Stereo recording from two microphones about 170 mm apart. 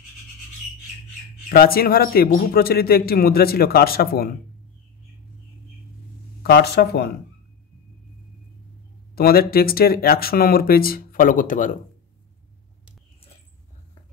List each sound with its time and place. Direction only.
1.5 s a man's voice: 60° left (ahead or behind)
6.4 s speech: 70° left (ahead or behind)
9.1 s a man's voice: 65° left (ahead or behind)